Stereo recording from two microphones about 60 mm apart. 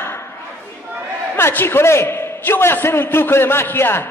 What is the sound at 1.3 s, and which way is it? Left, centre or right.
A man's voice, left.